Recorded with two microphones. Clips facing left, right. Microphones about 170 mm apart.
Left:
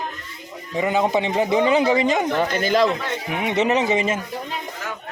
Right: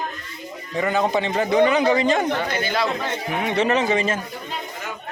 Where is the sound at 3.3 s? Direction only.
15° left (ahead or behind).